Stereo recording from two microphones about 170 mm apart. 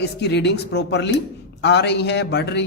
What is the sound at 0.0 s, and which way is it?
A man's voice, 85° left.